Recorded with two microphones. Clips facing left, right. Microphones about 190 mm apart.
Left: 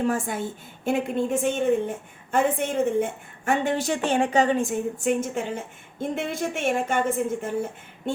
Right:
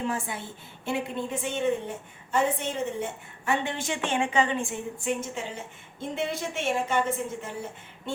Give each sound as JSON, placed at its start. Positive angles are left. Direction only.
{"t": 0.0, "sound": "a woman's voice", "side_deg": 45}